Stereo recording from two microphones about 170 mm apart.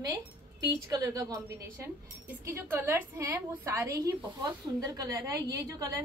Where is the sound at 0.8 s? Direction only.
20° right (ahead or behind).